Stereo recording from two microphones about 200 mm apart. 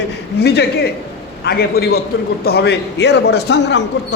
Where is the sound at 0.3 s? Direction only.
55° left (ahead or behind).